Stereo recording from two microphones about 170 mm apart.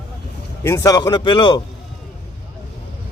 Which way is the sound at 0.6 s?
15° left (ahead or behind).